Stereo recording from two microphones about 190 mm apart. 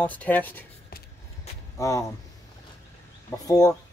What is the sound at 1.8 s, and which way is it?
Speech, 15° left (ahead or behind).